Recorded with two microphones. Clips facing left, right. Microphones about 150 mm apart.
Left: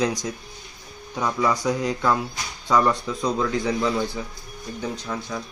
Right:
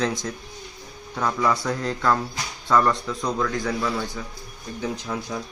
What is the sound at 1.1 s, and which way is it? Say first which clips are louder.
Speech: even; 10° left (ahead or behind).